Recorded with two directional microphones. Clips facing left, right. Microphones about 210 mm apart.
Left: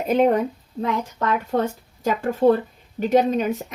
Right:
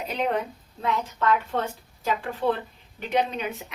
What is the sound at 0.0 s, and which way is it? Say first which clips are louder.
A woman's voice: left 9 dB; 45° left (ahead or behind).